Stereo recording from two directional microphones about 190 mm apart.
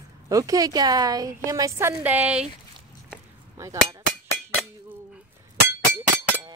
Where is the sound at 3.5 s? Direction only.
15° right (ahead or behind).